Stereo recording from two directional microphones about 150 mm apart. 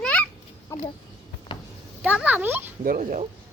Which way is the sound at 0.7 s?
20° left (ahead or behind).